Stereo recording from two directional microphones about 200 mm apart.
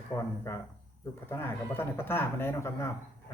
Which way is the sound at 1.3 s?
10° left (ahead or behind).